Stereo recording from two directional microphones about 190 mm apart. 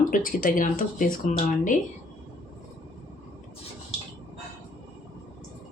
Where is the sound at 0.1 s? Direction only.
45° left (ahead or behind).